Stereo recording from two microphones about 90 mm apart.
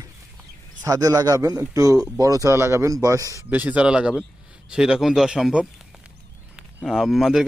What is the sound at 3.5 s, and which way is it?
Speech, 15° right (ahead or behind).